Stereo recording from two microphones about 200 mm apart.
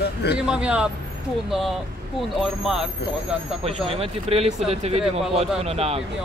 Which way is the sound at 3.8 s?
30° right (ahead or behind).